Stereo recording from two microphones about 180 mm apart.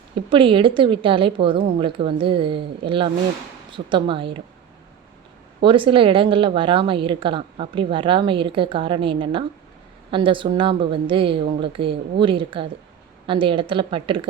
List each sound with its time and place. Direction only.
0.3 s speech: 30° right (ahead or behind)
5.6 s speech: 30° right (ahead or behind)